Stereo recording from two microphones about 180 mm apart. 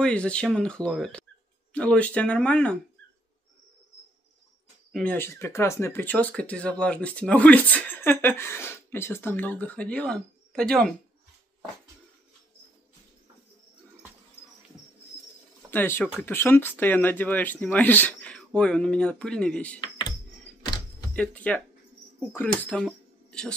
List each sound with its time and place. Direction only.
0.0 s speech: 5° left (ahead or behind)
4.9 s speech: 10° left (ahead or behind)
15.7 s speech: 10° left (ahead or behind)
20.6 s a sound: 25° left (ahead or behind)
21.1 s speech: 5° left (ahead or behind)